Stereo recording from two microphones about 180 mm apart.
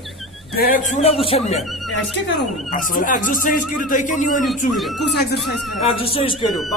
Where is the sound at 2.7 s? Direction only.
45° left (ahead or behind).